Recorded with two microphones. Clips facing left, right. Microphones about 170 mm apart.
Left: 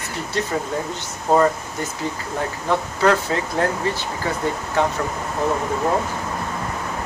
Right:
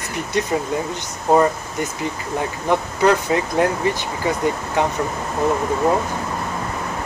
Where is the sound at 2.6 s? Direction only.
15° right (ahead or behind).